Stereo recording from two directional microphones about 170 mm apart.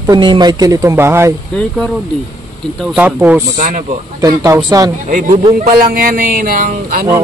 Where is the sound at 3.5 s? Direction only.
50° right (ahead or behind).